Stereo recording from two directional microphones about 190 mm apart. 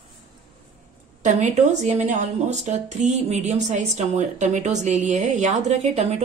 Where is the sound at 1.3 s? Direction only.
40° right (ahead or behind).